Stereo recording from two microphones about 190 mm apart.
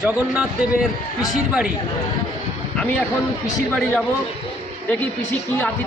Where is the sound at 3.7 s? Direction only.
5° left (ahead or behind).